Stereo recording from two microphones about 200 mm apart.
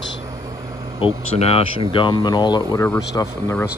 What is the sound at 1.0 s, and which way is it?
Speech, 25° left (ahead or behind).